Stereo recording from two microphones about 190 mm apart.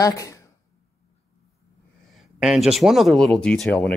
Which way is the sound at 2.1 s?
Centre (ahead or behind).